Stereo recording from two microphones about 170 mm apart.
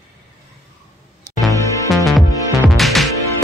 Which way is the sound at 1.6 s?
20° left (ahead or behind).